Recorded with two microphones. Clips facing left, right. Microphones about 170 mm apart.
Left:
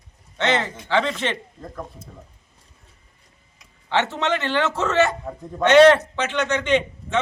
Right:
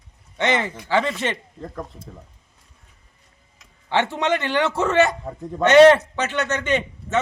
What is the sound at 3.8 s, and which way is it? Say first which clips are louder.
A man's voice: right 1 dB; 15° right (ahead or behind).